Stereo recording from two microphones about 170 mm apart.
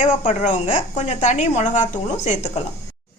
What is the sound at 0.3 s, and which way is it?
A woman's voice, 40° left (ahead or behind).